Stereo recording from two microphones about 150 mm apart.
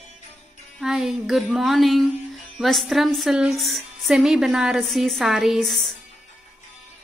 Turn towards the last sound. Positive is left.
turn(degrees=0)  # may be behind; listen again after turning